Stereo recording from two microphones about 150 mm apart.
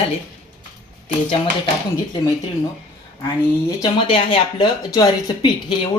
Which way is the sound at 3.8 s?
35° left (ahead or behind).